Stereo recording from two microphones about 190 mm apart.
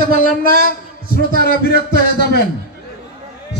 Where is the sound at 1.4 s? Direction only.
55° left (ahead or behind).